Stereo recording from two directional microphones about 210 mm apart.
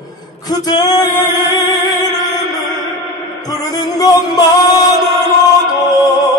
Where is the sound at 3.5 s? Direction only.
15° left (ahead or behind).